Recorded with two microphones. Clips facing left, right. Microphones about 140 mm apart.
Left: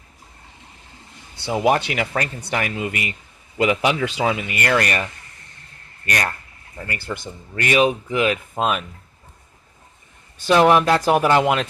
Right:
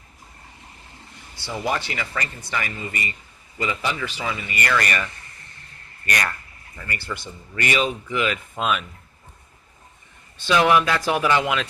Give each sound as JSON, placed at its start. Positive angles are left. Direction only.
{"t": 1.5, "sound": "speech", "side_deg": 70}
{"t": 4.7, "sound": "speech", "side_deg": 45}
{"t": 6.8, "sound": "speech", "side_deg": 50}
{"t": 10.3, "sound": "speech", "side_deg": 45}